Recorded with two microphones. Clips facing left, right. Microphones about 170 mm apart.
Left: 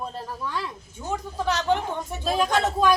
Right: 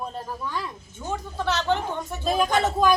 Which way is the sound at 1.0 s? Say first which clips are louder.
Left 1 dB; 10° left (ahead or behind).